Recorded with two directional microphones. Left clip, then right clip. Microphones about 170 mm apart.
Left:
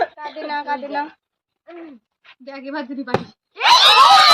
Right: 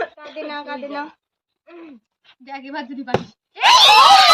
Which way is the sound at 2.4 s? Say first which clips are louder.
Left 1 dB; 25° right (ahead or behind).